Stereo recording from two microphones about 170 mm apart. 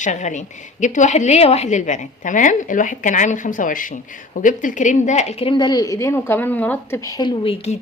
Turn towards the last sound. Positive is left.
turn(degrees=30)  # may be behind; listen again after turning